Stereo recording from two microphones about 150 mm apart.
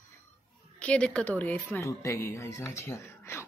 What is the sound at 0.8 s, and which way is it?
Speech, 10° left (ahead or behind).